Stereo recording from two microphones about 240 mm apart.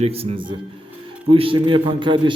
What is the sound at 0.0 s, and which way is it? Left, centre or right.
A man's voice, right.